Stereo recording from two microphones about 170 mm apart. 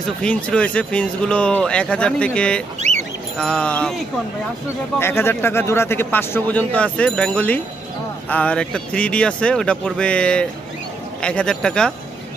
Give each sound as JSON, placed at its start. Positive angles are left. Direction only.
{"t": 0.2, "sound": "speech", "side_deg": 5}
{"t": 2.8, "sound": "a sound", "side_deg": -45}
{"t": 3.3, "sound": "speech", "side_deg": 5}